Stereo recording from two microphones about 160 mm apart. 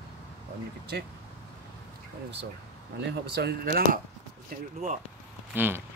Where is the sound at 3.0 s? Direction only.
90° right; by 4.7 s 65° right (ahead or behind).